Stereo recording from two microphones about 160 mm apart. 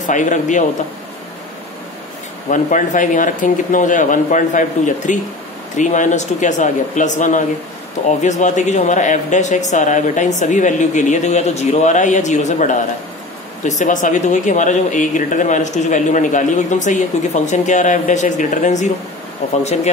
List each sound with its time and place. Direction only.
0.0 s speech: 50° left (ahead or behind)
2.5 s speech: 55° left (ahead or behind)